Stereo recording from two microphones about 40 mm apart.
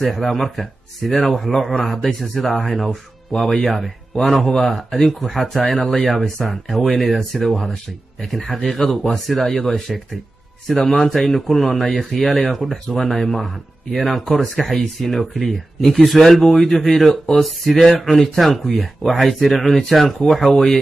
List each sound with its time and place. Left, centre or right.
0.0 s speech: centre
1.5 s speech: centre
4.7 s speech: centre